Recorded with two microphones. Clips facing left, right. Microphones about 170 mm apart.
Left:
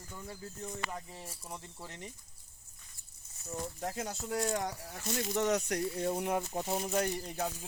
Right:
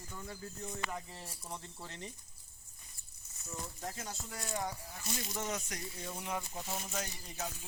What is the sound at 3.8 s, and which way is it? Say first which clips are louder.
Speech: left 6 dB; 65° left (ahead or behind).